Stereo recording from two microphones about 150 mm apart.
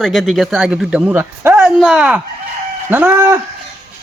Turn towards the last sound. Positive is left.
turn(degrees=-15)  # may be behind; listen again after turning